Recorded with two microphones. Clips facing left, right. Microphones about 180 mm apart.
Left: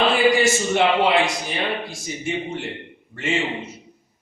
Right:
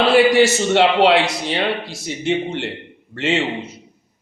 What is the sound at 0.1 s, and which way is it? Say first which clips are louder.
A man's voice: right 5 dB; 75° right (ahead or behind).